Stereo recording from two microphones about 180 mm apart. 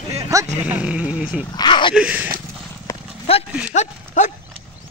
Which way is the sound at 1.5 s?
25° left (ahead or behind).